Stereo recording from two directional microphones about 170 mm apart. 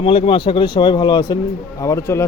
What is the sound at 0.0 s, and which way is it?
A man's voice, 35° left (ahead or behind).